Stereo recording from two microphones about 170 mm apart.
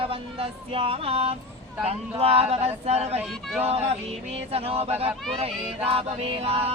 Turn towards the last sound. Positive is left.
turn(degrees=-35)  # may be behind; listen again after turning